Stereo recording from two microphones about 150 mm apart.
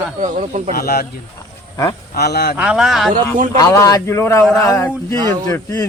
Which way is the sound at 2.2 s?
90° left.